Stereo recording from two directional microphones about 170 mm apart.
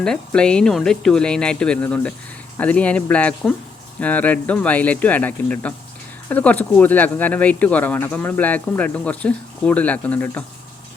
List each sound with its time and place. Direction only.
0.0 s speech: 5° left (ahead or behind)